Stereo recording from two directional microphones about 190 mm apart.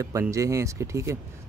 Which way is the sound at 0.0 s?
15° right (ahead or behind).